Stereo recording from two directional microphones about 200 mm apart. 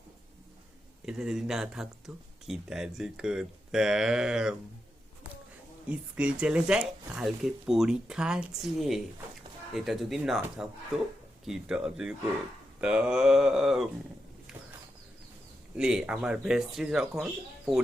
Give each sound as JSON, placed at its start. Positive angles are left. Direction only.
{"t": 1.0, "sound": "speech", "side_deg": 0}
{"t": 5.9, "sound": "speech", "side_deg": -5}
{"t": 15.7, "sound": "speech", "side_deg": -5}